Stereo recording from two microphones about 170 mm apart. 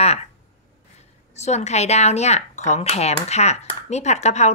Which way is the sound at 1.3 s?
40° left (ahead or behind).